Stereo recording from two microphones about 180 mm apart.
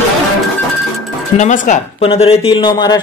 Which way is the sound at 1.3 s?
40° left (ahead or behind).